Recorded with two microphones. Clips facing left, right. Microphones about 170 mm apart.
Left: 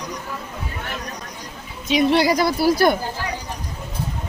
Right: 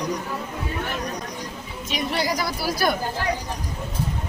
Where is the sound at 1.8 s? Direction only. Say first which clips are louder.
Left 9 dB; 85° left; by 2.5 s 65° left (ahead or behind).